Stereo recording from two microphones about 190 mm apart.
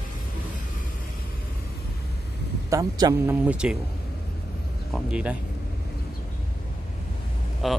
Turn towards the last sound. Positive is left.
turn(degrees=0)  # may be behind; listen again after turning